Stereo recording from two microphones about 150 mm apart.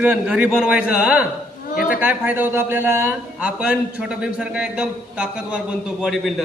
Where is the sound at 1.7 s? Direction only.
65° left (ahead or behind).